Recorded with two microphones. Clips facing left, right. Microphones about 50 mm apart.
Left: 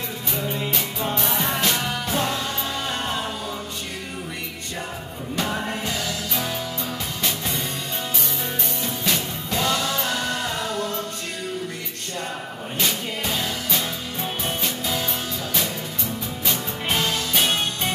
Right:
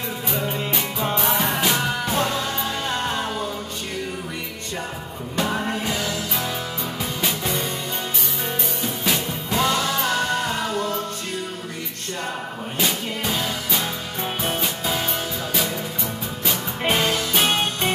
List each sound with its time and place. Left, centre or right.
0.7 s music: centre
5.9 s music: centre
9.0 s music: centre
12.7 s music: centre
16.8 s music: centre